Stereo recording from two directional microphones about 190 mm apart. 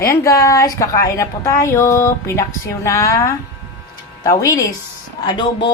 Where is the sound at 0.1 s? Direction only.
15° left (ahead or behind).